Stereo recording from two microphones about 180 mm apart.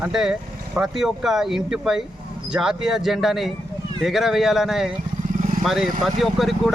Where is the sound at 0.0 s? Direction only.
Centre (ahead or behind).